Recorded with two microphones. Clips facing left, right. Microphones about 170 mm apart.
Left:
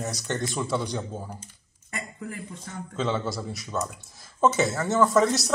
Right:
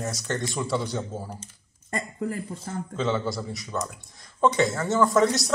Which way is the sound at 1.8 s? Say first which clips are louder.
Right 7 dB; 40° right (ahead or behind).